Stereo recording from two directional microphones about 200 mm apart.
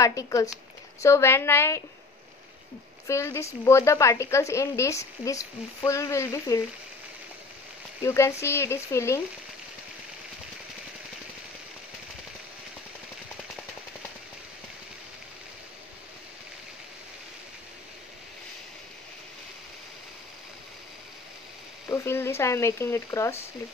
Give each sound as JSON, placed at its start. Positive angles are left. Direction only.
{"t": 0.0, "sound": "a woman's voice", "side_deg": 15}
{"t": 3.1, "sound": "a woman's voice", "side_deg": 15}
{"t": 8.0, "sound": "a woman's voice", "side_deg": 15}
{"t": 21.8, "sound": "a woman's voice", "side_deg": 15}